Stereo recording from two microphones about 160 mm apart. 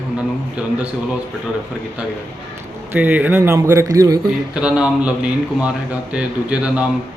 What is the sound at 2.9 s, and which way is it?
Speech, 10° right (ahead or behind).